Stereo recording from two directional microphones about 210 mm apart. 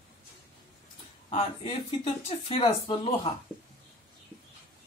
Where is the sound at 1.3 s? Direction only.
25° left (ahead or behind).